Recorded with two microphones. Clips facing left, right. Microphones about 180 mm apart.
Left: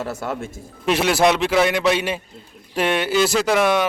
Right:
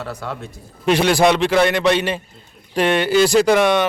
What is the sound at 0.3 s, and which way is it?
Speech, 45° left (ahead or behind).